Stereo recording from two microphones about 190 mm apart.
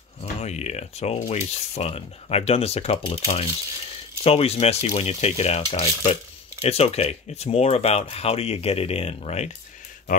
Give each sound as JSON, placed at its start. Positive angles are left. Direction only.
{"t": 0.2, "sound": "speech", "side_deg": 35}